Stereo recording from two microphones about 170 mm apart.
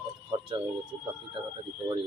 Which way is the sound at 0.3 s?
25° right (ahead or behind).